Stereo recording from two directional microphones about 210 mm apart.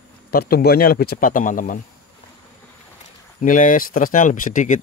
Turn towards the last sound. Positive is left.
turn(degrees=40)  # may be behind; listen again after turning